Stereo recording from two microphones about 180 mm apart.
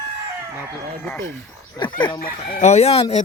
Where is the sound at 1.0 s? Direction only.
10° left (ahead or behind).